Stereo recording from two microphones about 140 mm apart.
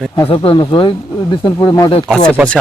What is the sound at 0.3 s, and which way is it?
Speech, 35° left (ahead or behind).